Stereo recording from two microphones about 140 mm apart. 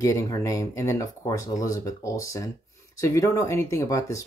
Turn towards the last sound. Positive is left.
turn(degrees=25)  # may be behind; listen again after turning